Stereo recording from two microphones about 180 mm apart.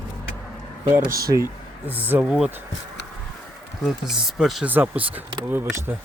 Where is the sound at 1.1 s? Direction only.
20° right (ahead or behind).